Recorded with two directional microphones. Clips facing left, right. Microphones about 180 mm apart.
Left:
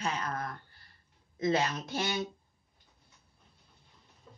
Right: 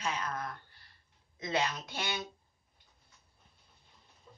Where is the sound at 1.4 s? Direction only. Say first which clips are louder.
Left 4 dB; 40° left (ahead or behind).